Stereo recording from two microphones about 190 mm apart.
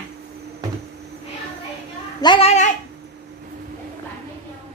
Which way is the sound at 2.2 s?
30° left (ahead or behind).